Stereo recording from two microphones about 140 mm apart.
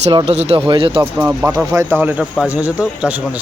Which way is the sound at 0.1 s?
35° right (ahead or behind).